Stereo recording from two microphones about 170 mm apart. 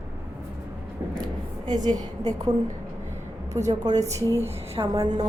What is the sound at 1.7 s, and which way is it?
Speech, 25° right (ahead or behind).